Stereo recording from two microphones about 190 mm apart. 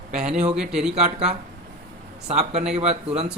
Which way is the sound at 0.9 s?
35° right (ahead or behind).